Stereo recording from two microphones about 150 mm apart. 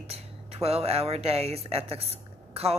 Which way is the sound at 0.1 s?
40° right (ahead or behind).